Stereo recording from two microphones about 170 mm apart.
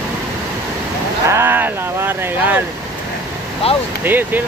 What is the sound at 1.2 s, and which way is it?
Speech, 15° right (ahead or behind).